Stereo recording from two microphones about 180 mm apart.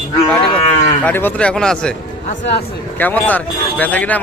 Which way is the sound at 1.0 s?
10° left (ahead or behind).